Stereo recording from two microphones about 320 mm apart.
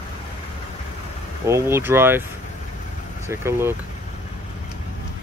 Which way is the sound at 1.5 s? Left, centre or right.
Centre.